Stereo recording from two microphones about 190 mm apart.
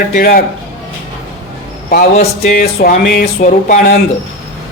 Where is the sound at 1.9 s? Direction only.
50° left (ahead or behind).